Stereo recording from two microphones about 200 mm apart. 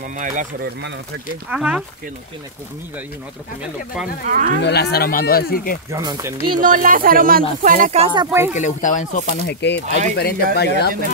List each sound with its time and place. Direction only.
0.2 s speech: 40° right (ahead or behind)
1.5 s speech: 5° right (ahead or behind)
4.3 s speech: 45° right (ahead or behind)
4.6 s speech: 55° left (ahead or behind)
5.9 s speech: 15° right (ahead or behind)
6.6 s speech: 45° right (ahead or behind)
8.0 s speech: 25° right (ahead or behind)
8.5 s speech: 40° left (ahead or behind)
9.5 s speech: 60° left (ahead or behind)